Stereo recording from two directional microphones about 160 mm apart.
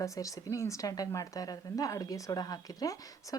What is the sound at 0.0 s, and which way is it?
A woman's voice, 20° left (ahead or behind).